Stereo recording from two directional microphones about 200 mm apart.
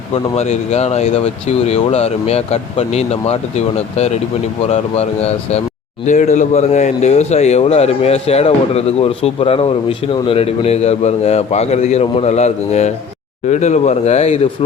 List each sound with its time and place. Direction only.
0.1 s speech: 35° left (ahead or behind)